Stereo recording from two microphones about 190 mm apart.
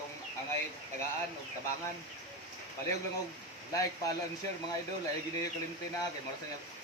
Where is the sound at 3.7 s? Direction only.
20° left (ahead or behind).